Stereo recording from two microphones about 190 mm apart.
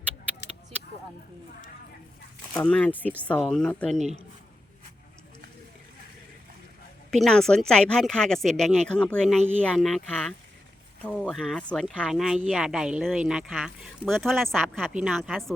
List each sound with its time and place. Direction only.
2.6 s speech: 5° left (ahead or behind)
3.9 s speech: 35° right (ahead or behind)
7.1 s speech: 5° left (ahead or behind)